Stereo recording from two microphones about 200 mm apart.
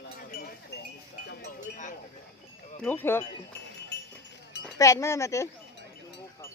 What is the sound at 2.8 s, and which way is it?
Speech, 10° left (ahead or behind).